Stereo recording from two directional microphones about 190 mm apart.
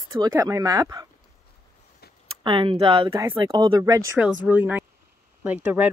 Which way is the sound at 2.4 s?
25° right (ahead or behind).